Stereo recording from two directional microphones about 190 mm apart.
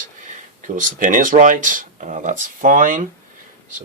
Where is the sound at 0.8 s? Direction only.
45° right (ahead or behind).